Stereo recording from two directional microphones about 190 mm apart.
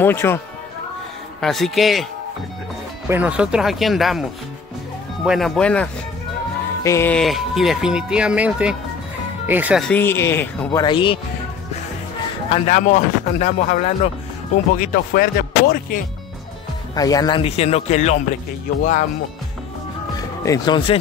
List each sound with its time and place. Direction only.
0.0 s speech: 10° left (ahead or behind)
1.4 s speech: centre (ahead or behind)
3.1 s speech: 5° right (ahead or behind)
5.2 s speech: centre (ahead or behind); by 7.2 s 15° left (ahead or behind)
7.2 s speech: centre (ahead or behind)
9.8 s speech: 10° left (ahead or behind)
10.8 s speech: 25° left (ahead or behind)
12.4 s speech: 35° left (ahead or behind)
14.8 s speech: 50° left (ahead or behind)
16.9 s speech: 20° left (ahead or behind); by 18.2 s 35° left (ahead or behind)
20.4 s speech: 20° left (ahead or behind)